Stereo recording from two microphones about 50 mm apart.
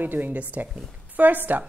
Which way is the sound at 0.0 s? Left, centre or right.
Right.